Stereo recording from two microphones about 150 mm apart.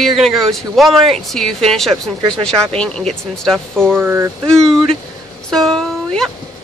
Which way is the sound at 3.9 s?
15° right (ahead or behind).